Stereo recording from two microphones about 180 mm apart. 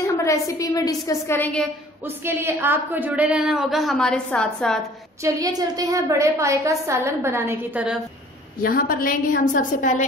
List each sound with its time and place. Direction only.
0.0 s a woman's voice: 15° left (ahead or behind)
2.0 s a woman's voice: 15° right (ahead or behind); by 4.7 s 5° left (ahead or behind)
5.2 s a woman's voice: 20° right (ahead or behind)
8.6 s a woman's voice: 55° left (ahead or behind)